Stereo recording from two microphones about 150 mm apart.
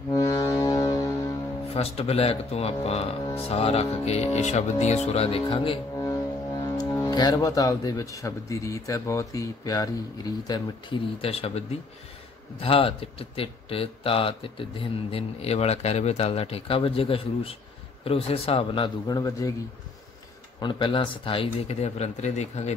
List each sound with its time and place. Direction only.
0.1 s music: 20° left (ahead or behind)
1.7 s speech: 40° left (ahead or behind)
5.9 s speech: 20° left (ahead or behind); by 18.9 s 40° left (ahead or behind)
19.0 s a man's voice: 25° left (ahead or behind)
20.6 s speech: 30° left (ahead or behind); by 22.8 s 50° left (ahead or behind)